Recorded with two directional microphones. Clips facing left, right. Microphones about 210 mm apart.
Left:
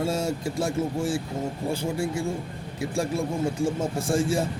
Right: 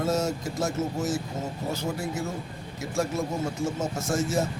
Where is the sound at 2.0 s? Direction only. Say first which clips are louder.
Left 4 dB; 10° left (ahead or behind).